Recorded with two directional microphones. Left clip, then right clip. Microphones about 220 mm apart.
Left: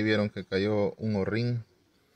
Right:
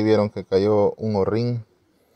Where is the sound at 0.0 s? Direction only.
10° right (ahead or behind).